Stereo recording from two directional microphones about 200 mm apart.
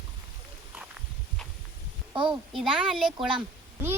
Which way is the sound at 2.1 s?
25° right (ahead or behind).